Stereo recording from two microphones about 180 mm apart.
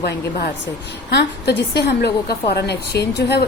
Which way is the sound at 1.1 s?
70° left (ahead or behind).